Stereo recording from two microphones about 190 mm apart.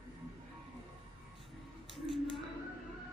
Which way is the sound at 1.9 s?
Centre (ahead or behind).